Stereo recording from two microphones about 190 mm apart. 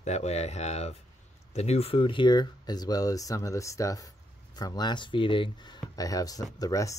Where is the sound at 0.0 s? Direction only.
35° left (ahead or behind).